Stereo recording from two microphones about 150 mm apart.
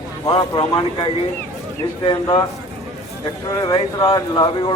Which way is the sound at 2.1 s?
30° left (ahead or behind).